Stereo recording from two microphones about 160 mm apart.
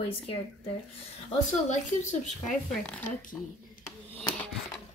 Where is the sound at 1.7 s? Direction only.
50° left (ahead or behind).